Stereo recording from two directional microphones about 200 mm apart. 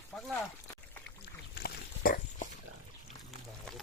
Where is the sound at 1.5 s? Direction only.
50° left (ahead or behind).